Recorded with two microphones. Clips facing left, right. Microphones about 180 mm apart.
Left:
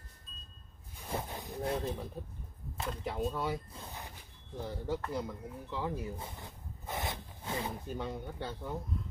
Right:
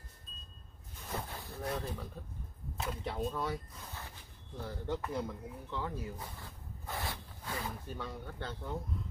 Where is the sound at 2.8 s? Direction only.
Centre (ahead or behind).